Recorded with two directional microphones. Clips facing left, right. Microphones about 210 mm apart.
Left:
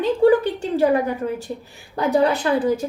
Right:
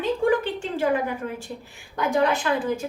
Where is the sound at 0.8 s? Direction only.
40° left (ahead or behind).